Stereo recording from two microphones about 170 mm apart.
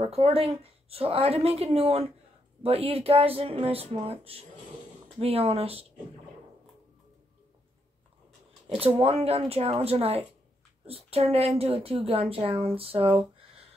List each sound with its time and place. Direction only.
0.0 s a woman's voice: 35° right (ahead or behind)
8.6 s a woman's voice: 35° right (ahead or behind)